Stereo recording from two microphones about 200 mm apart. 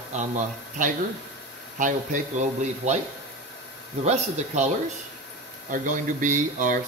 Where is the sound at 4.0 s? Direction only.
35° right (ahead or behind).